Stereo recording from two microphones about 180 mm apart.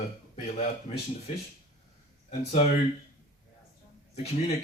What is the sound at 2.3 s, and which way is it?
Speech, 40° left (ahead or behind).